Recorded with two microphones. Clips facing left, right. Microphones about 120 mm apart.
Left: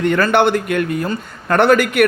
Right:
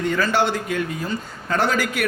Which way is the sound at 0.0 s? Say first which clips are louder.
Left 6 dB; 65° left (ahead or behind).